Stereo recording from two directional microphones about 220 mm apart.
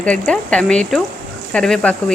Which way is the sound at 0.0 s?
5° left (ahead or behind).